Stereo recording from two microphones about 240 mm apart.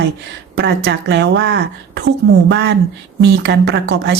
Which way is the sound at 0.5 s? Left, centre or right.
Right.